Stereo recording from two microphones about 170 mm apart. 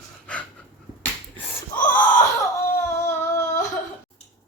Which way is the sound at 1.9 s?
15° left (ahead or behind).